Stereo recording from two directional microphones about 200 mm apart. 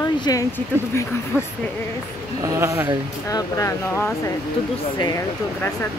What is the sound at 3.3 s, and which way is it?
Speech, 15° left (ahead or behind).